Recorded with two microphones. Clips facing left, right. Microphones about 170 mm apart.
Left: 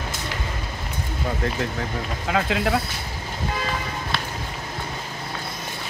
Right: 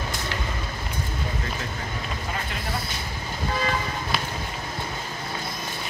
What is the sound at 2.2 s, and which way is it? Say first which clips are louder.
Speech: left 9 dB; 90° left.